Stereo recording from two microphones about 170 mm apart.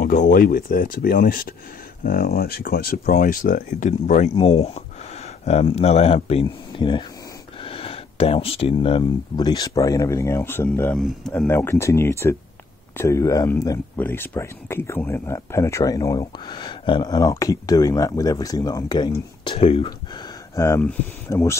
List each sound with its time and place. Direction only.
0.0 s speech: 50° left (ahead or behind)
4.4 s speech: 35° left (ahead or behind); by 11.0 s 10° left (ahead or behind)
11.0 s speech: centre (ahead or behind)
11.4 s speech: 15° left (ahead or behind); by 20.2 s 35° left (ahead or behind)
20.5 s speech: 15° left (ahead or behind)